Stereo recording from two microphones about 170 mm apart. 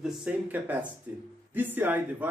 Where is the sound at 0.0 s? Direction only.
5° right (ahead or behind).